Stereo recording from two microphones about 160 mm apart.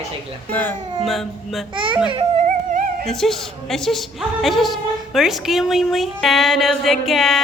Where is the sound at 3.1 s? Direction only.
Centre (ahead or behind).